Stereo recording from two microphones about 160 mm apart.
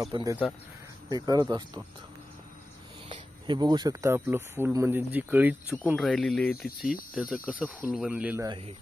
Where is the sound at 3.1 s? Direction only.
30° right (ahead or behind); by 5.8 s 10° right (ahead or behind).